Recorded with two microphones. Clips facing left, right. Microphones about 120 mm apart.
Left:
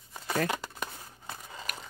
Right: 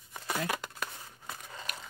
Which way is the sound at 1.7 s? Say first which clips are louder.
Left 2 dB; 45° left (ahead or behind).